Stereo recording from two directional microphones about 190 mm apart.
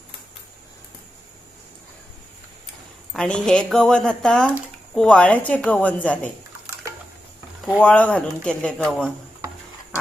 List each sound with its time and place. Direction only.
3.1 s a woman's voice: 5° left (ahead or behind)
7.6 s speech: 5° left (ahead or behind)